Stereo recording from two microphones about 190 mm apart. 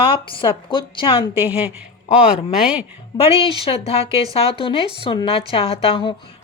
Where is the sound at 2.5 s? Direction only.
5° right (ahead or behind).